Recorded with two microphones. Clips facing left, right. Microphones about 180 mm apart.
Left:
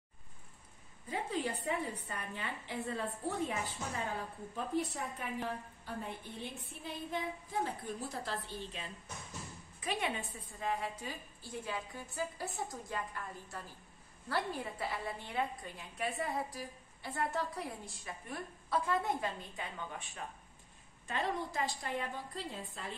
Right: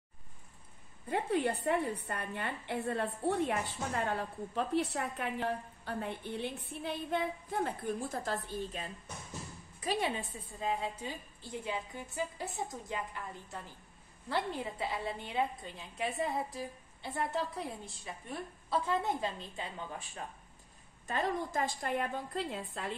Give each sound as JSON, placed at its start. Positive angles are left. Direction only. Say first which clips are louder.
{"t": 1.0, "sound": "a woman's voice", "louder": "right 5 dB", "side_deg": -60}
{"t": 10.6, "sound": "a woman's voice", "louder": "right 2 dB", "side_deg": -25}
{"t": 21.1, "sound": "a woman's voice", "louder": "right 3 dB", "side_deg": -45}